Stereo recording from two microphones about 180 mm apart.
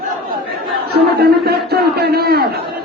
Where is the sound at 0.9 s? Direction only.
60° right (ahead or behind).